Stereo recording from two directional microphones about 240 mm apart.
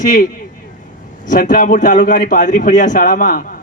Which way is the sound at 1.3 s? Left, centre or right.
Left.